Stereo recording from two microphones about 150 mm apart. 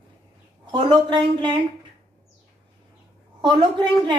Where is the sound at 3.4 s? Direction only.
30° right (ahead or behind).